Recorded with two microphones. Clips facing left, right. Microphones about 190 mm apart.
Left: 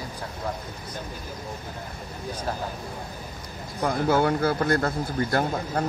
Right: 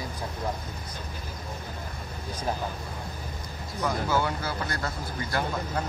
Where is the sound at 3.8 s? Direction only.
55° left (ahead or behind).